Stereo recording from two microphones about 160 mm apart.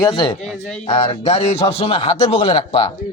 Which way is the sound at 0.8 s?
35° left (ahead or behind).